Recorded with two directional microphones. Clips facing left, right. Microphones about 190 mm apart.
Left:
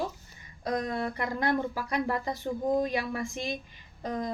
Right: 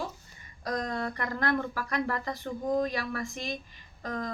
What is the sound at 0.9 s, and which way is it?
A woman's voice, 15° left (ahead or behind).